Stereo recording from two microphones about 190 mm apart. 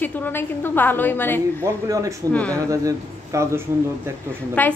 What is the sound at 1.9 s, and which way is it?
A man's voice, 15° right (ahead or behind).